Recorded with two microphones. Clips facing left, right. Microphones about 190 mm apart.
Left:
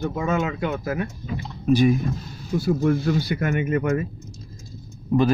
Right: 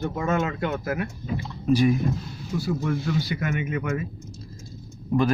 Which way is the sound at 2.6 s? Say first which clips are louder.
Left 6 dB; 45° left (ahead or behind).